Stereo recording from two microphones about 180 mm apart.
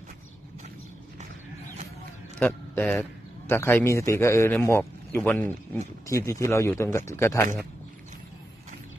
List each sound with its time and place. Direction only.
2.3 s a man's voice: 10° left (ahead or behind)